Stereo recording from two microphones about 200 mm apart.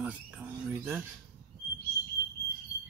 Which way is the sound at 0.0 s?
5° right (ahead or behind).